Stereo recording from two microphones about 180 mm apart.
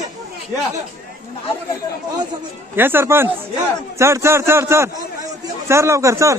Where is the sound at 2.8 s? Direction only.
10° right (ahead or behind).